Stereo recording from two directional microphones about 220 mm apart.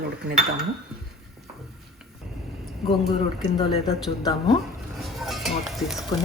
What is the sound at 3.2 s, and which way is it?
Speech, 25° left (ahead or behind).